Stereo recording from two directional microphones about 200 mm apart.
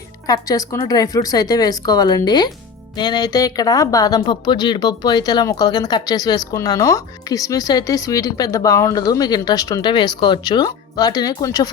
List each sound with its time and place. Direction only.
0.3 s speech: 15° left (ahead or behind)